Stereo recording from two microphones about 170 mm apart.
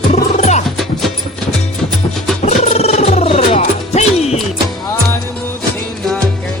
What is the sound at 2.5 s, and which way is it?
Music, 40° left (ahead or behind).